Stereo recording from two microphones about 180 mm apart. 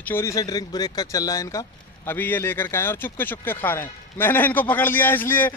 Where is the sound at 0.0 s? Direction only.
15° left (ahead or behind).